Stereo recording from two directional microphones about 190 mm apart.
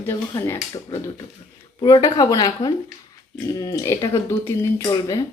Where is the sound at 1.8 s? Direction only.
20° left (ahead or behind).